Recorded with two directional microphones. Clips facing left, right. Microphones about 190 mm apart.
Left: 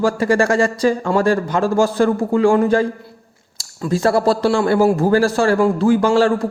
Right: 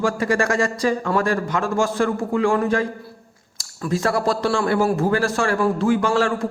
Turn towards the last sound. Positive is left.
turn(degrees=30)  # may be behind; listen again after turning